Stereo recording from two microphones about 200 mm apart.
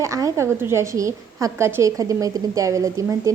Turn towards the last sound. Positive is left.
turn(degrees=-15)  # may be behind; listen again after turning